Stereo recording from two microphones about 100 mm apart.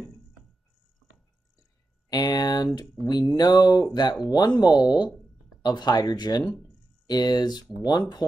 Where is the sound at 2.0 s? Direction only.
40° left (ahead or behind).